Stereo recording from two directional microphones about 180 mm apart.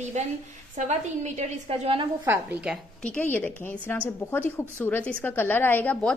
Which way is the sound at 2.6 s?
5° left (ahead or behind).